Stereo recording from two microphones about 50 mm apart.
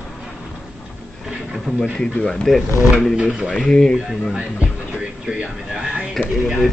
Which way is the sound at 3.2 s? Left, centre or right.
Centre.